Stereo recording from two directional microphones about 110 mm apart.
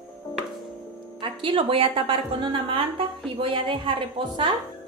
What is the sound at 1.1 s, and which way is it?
A woman's voice, 50° right (ahead or behind).